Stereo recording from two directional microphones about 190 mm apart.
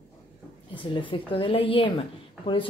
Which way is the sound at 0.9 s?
25° left (ahead or behind).